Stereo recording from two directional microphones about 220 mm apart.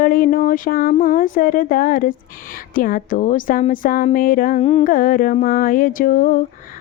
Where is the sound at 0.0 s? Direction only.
40° left (ahead or behind).